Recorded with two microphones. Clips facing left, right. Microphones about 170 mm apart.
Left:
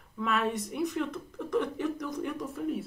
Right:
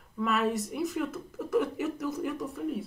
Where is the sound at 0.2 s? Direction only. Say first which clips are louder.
Right 2 dB; centre (ahead or behind).